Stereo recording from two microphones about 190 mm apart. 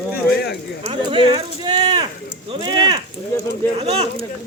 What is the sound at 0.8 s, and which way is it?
Speech, 25° right (ahead or behind).